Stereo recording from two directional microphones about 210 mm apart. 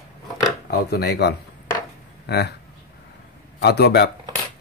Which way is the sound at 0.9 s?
50° left (ahead or behind).